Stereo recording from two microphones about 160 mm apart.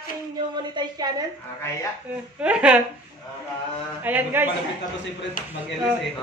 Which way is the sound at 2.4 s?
5° right (ahead or behind).